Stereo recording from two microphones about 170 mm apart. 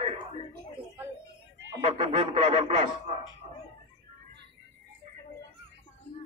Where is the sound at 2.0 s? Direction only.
35° right (ahead or behind).